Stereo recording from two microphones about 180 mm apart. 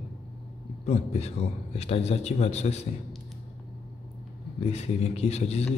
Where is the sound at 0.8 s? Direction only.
35° left (ahead or behind).